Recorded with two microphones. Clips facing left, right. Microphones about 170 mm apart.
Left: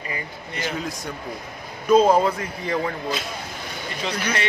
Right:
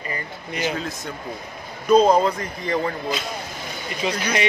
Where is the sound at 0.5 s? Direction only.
15° right (ahead or behind).